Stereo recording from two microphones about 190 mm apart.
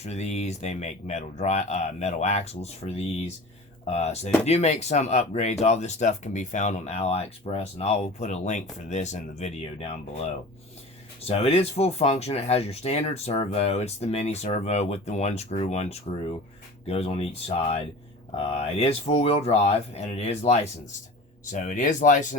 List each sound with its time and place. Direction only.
0.0 s speech: 35° left (ahead or behind)
11.3 s speech: 35° left (ahead or behind)